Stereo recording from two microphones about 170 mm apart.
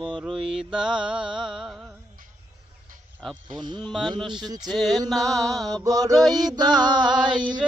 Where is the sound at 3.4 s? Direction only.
25° right (ahead or behind).